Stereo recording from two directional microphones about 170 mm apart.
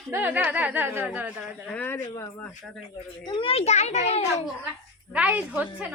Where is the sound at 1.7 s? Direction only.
10° left (ahead or behind).